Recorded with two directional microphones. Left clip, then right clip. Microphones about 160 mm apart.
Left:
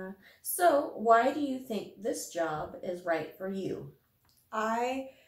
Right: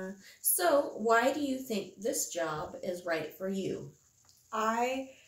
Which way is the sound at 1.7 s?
20° right (ahead or behind).